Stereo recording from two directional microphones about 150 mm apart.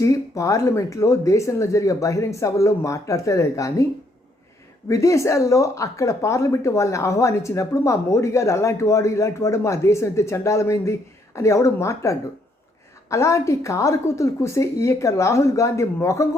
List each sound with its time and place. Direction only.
0.0 s speech: 20° left (ahead or behind)
4.9 s speech: 20° left (ahead or behind)